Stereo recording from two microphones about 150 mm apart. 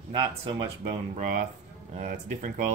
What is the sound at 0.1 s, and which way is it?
Speech, 30° right (ahead or behind).